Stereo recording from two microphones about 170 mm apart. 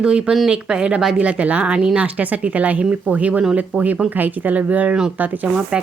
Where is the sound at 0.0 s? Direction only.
5° right (ahead or behind).